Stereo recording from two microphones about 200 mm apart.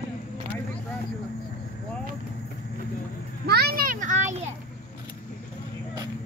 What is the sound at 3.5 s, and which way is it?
Children playing, 50° right (ahead or behind).